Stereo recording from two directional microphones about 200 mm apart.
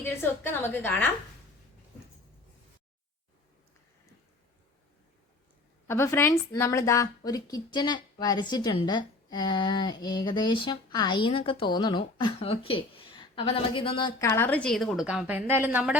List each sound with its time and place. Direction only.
0.0 s a woman's voice: 10° left (ahead or behind)
5.9 s a woman's voice: 15° left (ahead or behind)
14.2 s a woman's voice: 15° left (ahead or behind); by 16.0 s 5° right (ahead or behind)